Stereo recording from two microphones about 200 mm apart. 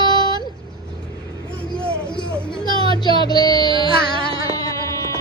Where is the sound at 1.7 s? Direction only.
5° left (ahead or behind).